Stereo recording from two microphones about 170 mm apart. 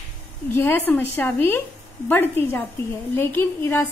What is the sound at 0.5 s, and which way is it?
A woman's voice, 15° left (ahead or behind).